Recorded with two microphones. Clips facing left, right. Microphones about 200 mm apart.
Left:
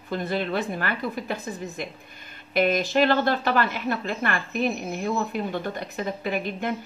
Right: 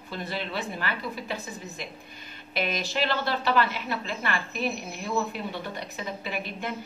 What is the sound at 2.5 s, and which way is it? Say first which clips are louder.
A woman's voice: left 8 dB; 50° left (ahead or behind).